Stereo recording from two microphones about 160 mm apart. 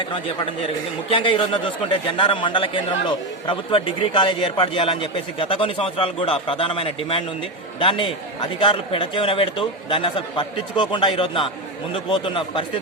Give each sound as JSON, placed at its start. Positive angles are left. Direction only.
{"t": 1.1, "sound": "a man's voice", "side_deg": 30}